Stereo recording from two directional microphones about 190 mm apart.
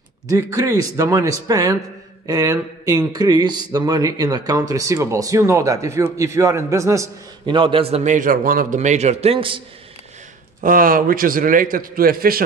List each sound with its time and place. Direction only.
0.3 s a man's voice: 15° right (ahead or behind)
10.6 s a man's voice: 45° right (ahead or behind)